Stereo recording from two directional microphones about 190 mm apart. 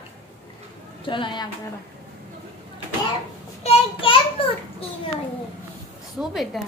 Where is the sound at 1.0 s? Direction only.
25° left (ahead or behind).